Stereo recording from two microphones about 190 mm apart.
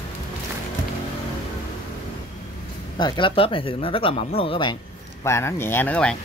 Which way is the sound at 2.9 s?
25° left (ahead or behind).